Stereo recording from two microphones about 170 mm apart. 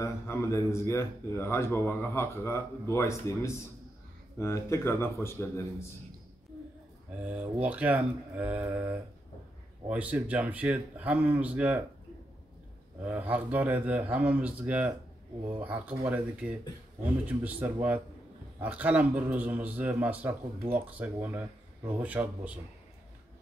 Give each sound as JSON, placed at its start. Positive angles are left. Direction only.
{"t": 0.0, "sound": "speech", "side_deg": 15}
{"t": 7.6, "sound": "a man's voice", "side_deg": -10}
{"t": 13.1, "sound": "a man's voice", "side_deg": -10}